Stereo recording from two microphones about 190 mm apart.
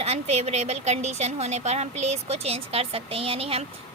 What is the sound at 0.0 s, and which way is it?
A woman's voice, 35° right (ahead or behind).